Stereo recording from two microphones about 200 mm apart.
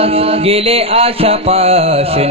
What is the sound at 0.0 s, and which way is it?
Music, 30° right (ahead or behind).